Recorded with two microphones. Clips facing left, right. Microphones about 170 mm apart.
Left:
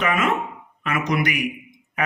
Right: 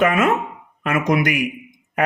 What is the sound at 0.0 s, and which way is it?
Speech, 45° right (ahead or behind).